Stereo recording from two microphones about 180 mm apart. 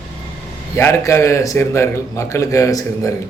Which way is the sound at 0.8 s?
15° left (ahead or behind).